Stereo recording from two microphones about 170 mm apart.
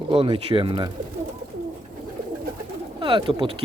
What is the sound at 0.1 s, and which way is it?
Speech, 30° right (ahead or behind).